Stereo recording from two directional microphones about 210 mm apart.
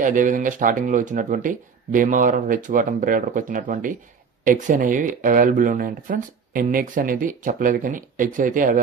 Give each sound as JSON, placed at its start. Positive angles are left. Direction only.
{"t": 0.0, "sound": "speech", "side_deg": -40}